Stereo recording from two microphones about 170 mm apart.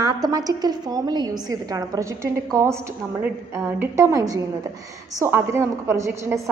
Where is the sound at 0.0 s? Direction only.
20° right (ahead or behind).